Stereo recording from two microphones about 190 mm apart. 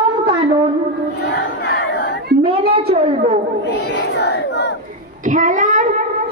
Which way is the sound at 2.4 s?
30° right (ahead or behind).